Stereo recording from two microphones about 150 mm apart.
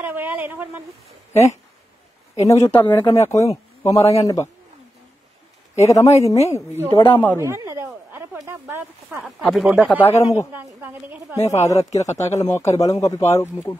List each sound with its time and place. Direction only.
0.0 s a sound: 15° right (ahead or behind)
2.3 s speech: 20° left (ahead or behind)
5.8 s speech: 20° left (ahead or behind)
6.9 s speech: 35° left (ahead or behind)
7.3 s speech: 20° right (ahead or behind)
9.2 s speech: centre (ahead or behind)
9.8 s a man's voice: 15° left (ahead or behind)
10.5 s a woman's voice: 15° right (ahead or behind)
11.3 s speech: 50° left (ahead or behind)
12.0 s speech: 20° left (ahead or behind)